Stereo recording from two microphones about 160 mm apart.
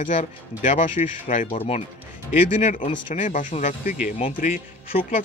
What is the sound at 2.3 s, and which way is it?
Speech, 55° left (ahead or behind).